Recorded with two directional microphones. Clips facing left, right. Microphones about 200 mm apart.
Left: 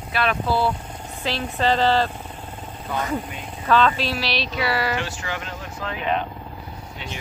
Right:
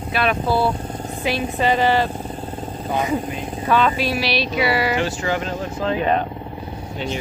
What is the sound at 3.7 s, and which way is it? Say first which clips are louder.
Speech: right 1 dB; 10° right (ahead or behind).